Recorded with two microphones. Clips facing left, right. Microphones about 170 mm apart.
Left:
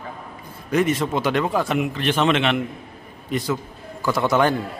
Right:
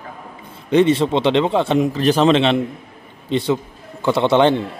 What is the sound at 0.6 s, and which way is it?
A man's voice, 30° right (ahead or behind).